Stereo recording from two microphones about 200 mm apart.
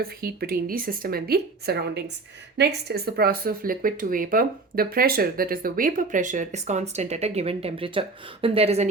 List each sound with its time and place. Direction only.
0.0 s speech: 50° right (ahead or behind); by 8.9 s 30° right (ahead or behind)